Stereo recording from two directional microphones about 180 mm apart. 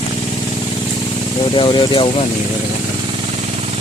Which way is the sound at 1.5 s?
25° left (ahead or behind).